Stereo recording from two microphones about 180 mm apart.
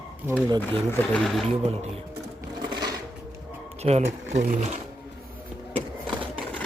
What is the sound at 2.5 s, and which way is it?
Sewing machine, 25° right (ahead or behind).